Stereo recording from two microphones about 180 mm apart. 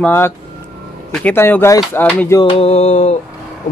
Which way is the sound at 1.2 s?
10° left (ahead or behind).